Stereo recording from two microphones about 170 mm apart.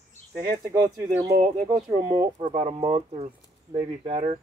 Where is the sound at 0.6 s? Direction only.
15° right (ahead or behind).